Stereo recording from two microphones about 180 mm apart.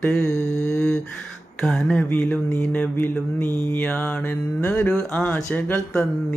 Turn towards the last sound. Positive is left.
turn(degrees=5)  # may be behind; listen again after turning